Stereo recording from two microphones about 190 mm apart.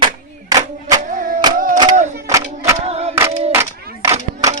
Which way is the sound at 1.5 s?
45° right (ahead or behind).